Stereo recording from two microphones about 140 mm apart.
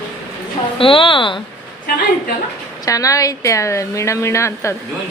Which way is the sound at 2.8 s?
25° left (ahead or behind).